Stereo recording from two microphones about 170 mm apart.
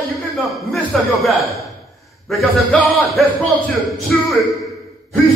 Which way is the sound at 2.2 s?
Centre (ahead or behind).